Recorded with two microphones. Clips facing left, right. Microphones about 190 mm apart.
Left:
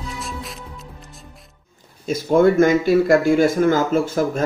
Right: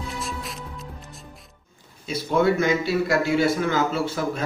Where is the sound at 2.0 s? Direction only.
45° left (ahead or behind).